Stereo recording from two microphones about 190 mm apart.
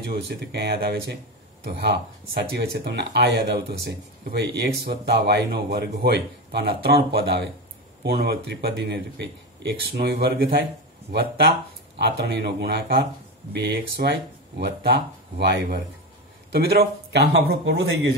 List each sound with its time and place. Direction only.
0.1 s a man's voice: 60° right (ahead or behind)